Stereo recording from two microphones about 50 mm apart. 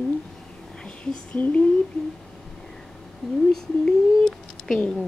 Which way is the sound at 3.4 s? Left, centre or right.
Centre.